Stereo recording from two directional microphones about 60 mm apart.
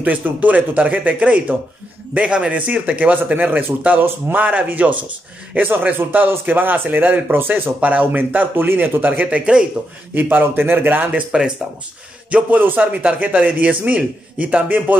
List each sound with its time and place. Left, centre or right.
0.0 s a man's voice: right
10.1 s a man's voice: right
11.1 s speech: centre